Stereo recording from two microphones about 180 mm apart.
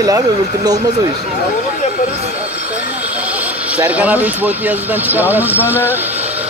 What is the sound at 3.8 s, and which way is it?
Speech, 10° right (ahead or behind).